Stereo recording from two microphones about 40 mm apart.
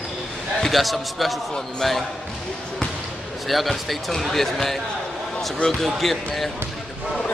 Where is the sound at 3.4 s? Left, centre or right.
Centre.